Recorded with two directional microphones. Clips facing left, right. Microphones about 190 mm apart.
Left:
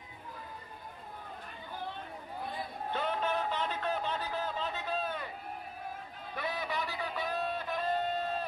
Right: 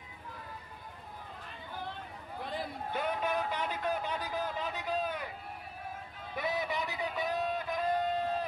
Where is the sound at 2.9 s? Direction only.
10° right (ahead or behind).